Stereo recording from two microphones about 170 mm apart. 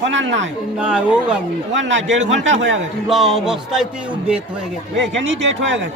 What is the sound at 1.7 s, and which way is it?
Speech, 90° right.